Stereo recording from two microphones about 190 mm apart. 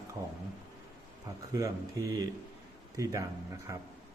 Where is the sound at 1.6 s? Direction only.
15° right (ahead or behind).